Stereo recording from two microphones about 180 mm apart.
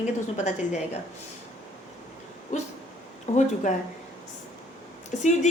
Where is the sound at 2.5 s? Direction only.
40° left (ahead or behind).